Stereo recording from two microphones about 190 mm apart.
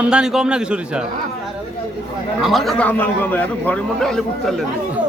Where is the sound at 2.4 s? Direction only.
Centre (ahead or behind).